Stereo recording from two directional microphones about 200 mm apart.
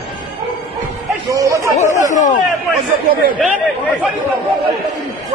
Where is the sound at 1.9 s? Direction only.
35° left (ahead or behind).